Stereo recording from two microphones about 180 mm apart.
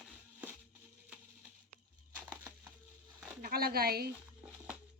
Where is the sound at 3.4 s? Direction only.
55° right (ahead or behind).